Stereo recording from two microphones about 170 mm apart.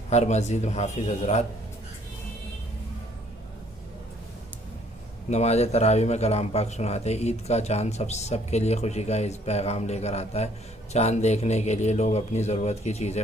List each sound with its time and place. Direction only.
0.1 s a man's voice: 40° left (ahead or behind)
5.3 s a man's voice: 40° left (ahead or behind)